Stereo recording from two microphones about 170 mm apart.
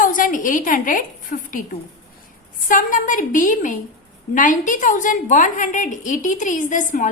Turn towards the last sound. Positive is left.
turn(degrees=50)  # may be behind; listen again after turning